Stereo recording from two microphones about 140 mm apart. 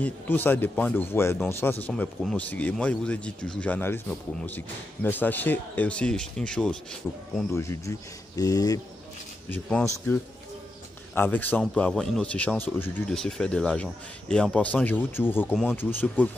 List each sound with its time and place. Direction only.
0.0 s speech: 15° left (ahead or behind)
7.5 s speech: 20° left (ahead or behind)
9.5 s speech: 5° left (ahead or behind)
11.1 s speech: 10° left (ahead or behind)